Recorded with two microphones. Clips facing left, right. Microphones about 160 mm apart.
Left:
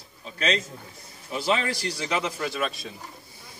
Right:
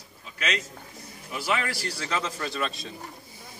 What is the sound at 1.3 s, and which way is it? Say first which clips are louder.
A man's voice: left 3 dB; 25° left (ahead or behind).